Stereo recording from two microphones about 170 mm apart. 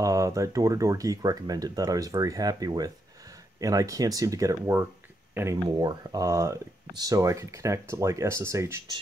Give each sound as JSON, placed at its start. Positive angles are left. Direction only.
{"t": 0.0, "sound": "speech", "side_deg": -20}